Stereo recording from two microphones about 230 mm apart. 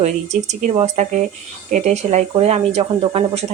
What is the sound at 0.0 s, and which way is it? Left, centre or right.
Speech, right.